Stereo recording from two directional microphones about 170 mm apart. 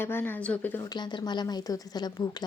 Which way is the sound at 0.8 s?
25° left (ahead or behind).